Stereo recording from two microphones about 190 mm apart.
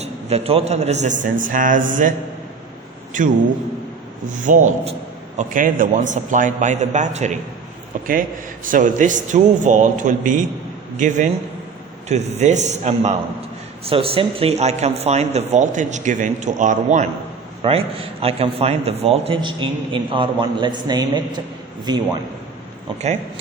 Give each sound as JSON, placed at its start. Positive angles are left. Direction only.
{"t": 0.0, "sound": "a man's voice", "side_deg": -35}
{"t": 4.3, "sound": "a man's voice", "side_deg": -40}
{"t": 17.6, "sound": "a man's voice", "side_deg": -30}